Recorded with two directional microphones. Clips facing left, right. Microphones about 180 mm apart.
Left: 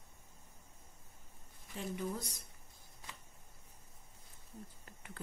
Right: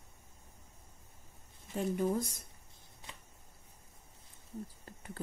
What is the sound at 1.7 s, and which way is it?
Speech, 45° right (ahead or behind).